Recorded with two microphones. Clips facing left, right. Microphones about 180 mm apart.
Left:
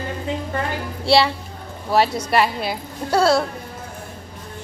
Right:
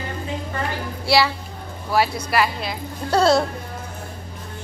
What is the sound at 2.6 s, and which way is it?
Speech, 5° left (ahead or behind).